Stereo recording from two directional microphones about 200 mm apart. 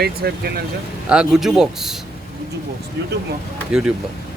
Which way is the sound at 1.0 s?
5° right (ahead or behind).